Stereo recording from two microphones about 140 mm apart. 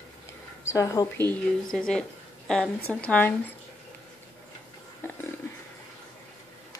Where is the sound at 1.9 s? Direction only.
5° left (ahead or behind).